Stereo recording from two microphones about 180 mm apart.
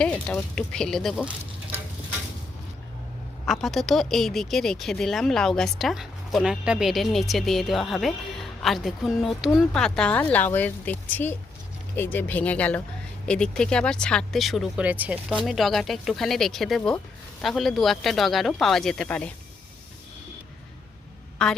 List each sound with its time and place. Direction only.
0.0 s a woman's voice: 5° left (ahead or behind)
3.4 s a woman's voice: centre (ahead or behind)
21.4 s a woman's voice: 5° left (ahead or behind)